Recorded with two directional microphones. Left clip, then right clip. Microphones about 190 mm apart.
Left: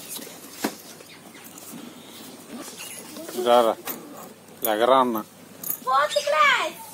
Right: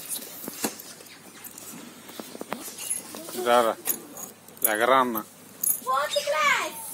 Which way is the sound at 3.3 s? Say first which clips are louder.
Left 3 dB; centre (ahead or behind).